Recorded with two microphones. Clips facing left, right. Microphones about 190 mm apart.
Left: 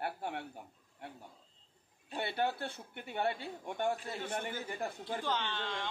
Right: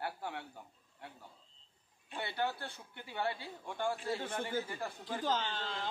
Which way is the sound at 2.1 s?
25° left (ahead or behind).